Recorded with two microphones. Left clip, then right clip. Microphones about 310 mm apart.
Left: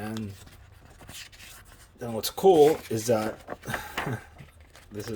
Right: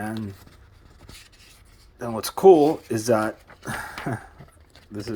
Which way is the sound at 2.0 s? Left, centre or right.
Centre.